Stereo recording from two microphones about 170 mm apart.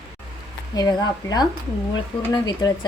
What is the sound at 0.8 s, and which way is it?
Speech, 25° left (ahead or behind).